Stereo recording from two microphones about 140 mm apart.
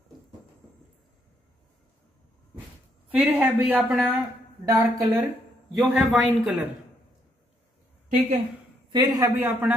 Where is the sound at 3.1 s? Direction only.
10° right (ahead or behind).